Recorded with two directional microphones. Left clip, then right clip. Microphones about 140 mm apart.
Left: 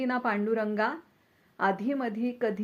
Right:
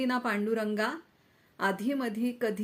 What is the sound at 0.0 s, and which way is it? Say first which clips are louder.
A woman's voice: left 1 dB; 25° right (ahead or behind).